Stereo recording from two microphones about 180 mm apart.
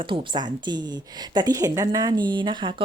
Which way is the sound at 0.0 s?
25° right (ahead or behind).